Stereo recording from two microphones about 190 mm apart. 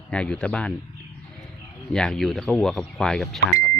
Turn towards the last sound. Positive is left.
turn(degrees=0)  # may be behind; listen again after turning